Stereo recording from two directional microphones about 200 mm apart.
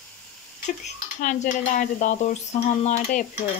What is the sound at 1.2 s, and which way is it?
Speech, 40° left (ahead or behind).